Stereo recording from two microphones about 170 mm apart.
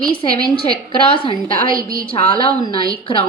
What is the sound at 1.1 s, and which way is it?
Speech, 30° left (ahead or behind).